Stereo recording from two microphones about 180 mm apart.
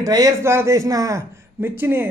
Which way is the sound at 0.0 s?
20° right (ahead or behind).